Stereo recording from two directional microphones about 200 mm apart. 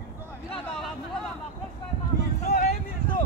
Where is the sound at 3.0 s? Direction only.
25° left (ahead or behind).